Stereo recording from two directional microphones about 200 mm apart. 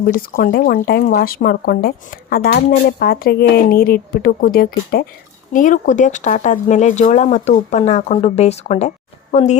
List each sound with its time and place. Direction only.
0.0 s speech: 45° left (ahead or behind)